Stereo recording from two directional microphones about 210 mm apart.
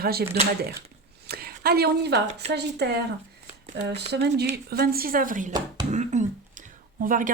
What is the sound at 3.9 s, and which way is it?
A woman's voice, 50° right (ahead or behind).